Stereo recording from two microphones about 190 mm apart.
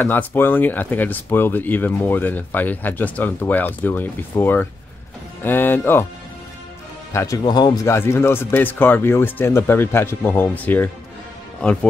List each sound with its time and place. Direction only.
0.0 s speech: 10° left (ahead or behind)
7.1 s speech: 15° left (ahead or behind)